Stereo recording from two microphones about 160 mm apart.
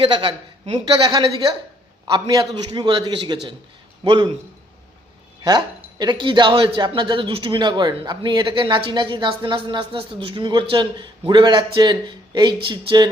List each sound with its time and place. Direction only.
0.0 s a woman's voice: 30° right (ahead or behind)
1.0 s speech: 25° right (ahead or behind)
5.4 s speech: 25° right (ahead or behind)